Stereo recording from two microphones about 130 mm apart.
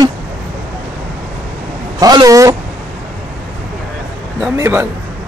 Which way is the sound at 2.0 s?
30° right (ahead or behind).